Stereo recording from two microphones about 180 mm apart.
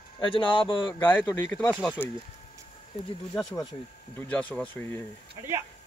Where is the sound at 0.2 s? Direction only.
30° left (ahead or behind).